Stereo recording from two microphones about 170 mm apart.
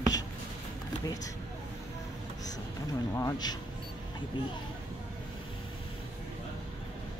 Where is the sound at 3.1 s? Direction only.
20° left (ahead or behind).